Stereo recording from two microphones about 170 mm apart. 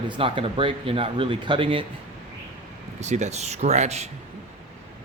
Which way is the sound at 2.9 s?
40° right (ahead or behind).